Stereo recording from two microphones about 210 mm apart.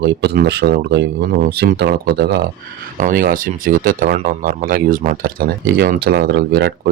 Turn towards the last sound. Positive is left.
turn(degrees=-55)  # may be behind; listen again after turning